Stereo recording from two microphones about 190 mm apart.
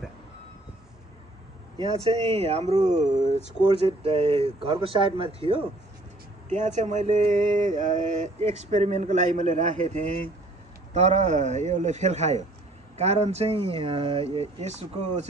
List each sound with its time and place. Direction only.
2.0 s speech: 25° right (ahead or behind)
6.5 s speech: 40° right (ahead or behind)